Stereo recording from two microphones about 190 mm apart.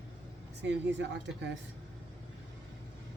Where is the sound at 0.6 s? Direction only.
65° right (ahead or behind).